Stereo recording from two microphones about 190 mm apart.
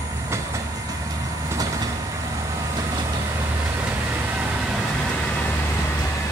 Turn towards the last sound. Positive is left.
turn(degrees=-5)  # may be behind; listen again after turning